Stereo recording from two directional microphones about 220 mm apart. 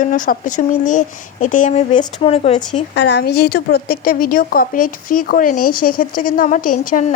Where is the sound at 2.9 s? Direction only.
50° left (ahead or behind).